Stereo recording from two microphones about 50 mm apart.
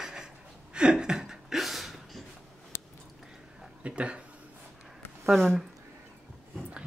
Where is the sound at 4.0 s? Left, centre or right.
Right.